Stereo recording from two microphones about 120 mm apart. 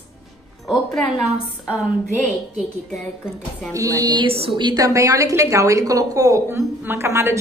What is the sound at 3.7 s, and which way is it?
Speech, 30° right (ahead or behind).